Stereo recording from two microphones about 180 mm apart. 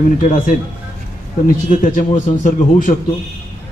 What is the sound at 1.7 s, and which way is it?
A man's voice, 45° left (ahead or behind).